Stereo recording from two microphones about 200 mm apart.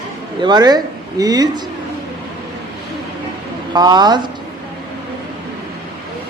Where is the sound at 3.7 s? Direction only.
20° right (ahead or behind).